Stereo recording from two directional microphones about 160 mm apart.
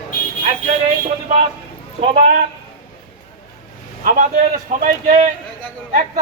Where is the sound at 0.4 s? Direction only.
40° right (ahead or behind).